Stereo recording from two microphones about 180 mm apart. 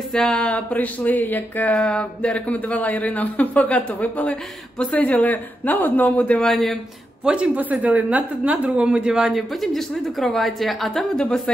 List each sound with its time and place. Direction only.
0.1 s a woman's voice: 5° left (ahead or behind)